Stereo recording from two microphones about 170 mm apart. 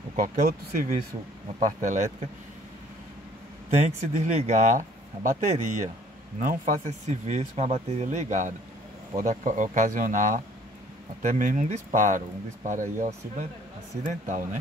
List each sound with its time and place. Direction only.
0.1 s speech: 55° right (ahead or behind)
3.7 s speech: 40° right (ahead or behind)
14.0 s speech: 50° right (ahead or behind)